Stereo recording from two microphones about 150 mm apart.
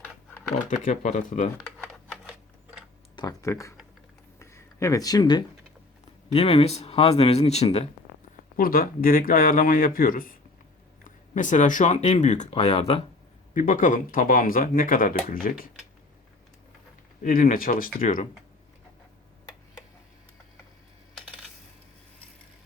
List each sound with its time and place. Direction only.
0.5 s speech: 50° left (ahead or behind)
1.6 s a sound: 5° left (ahead or behind)
3.2 s speech: 25° left (ahead or behind)
4.4 s a sound: 20° left (ahead or behind)
6.3 s speech: 40° left (ahead or behind)
8.5 s speech: 70° left (ahead or behind)
11.3 s speech: 55° left (ahead or behind); by 13.0 s 40° left (ahead or behind)
13.5 s speech: 60° left (ahead or behind)
17.2 s speech: 65° left (ahead or behind)